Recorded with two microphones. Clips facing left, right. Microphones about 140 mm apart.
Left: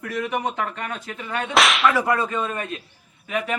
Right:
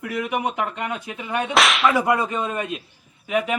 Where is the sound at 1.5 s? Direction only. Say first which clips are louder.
Even; centre (ahead or behind).